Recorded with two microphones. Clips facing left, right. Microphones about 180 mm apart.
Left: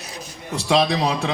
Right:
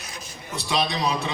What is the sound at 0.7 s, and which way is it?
Speech, 85° left.